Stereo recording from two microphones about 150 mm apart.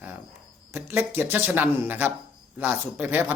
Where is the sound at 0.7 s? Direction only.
15° right (ahead or behind).